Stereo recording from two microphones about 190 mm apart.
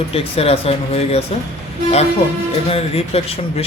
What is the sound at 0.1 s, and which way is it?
Speech, 30° left (ahead or behind).